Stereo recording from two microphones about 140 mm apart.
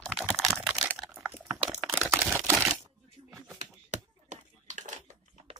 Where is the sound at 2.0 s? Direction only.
15° right (ahead or behind).